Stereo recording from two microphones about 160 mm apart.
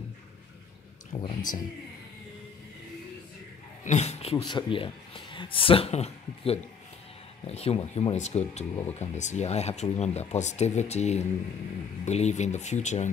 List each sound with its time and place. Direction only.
1.1 s speech: 25° left (ahead or behind)
3.8 s speech: 45° left (ahead or behind)
4.4 s speech: 30° left (ahead or behind); by 13.1 s 45° left (ahead or behind)